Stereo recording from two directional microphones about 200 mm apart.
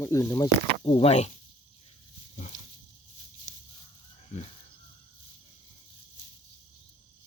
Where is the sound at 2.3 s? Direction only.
40° left (ahead or behind).